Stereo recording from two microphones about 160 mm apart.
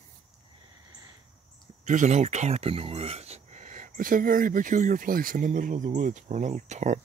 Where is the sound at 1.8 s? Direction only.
50° right (ahead or behind).